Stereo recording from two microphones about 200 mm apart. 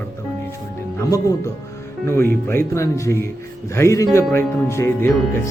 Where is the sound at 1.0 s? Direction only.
15° left (ahead or behind).